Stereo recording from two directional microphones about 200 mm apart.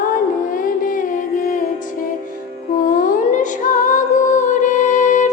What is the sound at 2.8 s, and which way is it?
Music, 45° left (ahead or behind).